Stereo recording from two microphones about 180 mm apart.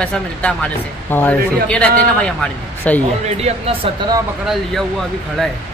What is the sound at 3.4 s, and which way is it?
Speech, 35° right (ahead or behind).